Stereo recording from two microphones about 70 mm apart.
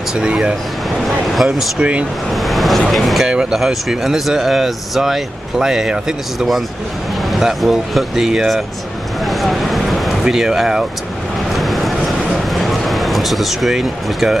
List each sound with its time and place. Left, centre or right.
0.1 s speech: centre
1.0 s speech: centre
1.8 s speech: centre
2.3 s vehicle: centre
2.9 s speech: centre
9.2 s a sound: centre
11.5 s vehicle: centre
12.5 s a sound: centre